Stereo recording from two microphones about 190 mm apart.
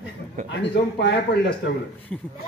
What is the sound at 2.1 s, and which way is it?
Speech, 5° left (ahead or behind).